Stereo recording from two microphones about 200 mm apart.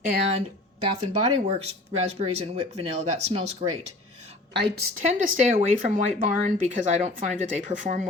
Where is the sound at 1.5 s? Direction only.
30° right (ahead or behind).